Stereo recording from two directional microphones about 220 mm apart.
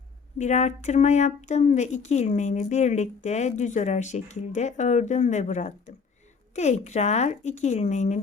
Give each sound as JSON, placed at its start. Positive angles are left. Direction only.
{"t": 0.3, "sound": "speech", "side_deg": 30}